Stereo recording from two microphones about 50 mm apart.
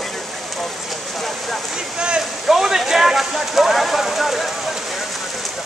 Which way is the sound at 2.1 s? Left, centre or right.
Centre.